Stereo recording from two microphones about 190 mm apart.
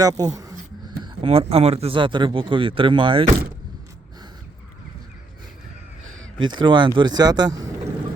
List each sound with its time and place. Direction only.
0.0 s speech: 20° right (ahead or behind)
1.0 s speech: 30° right (ahead or behind)
6.4 s speech: 25° right (ahead or behind)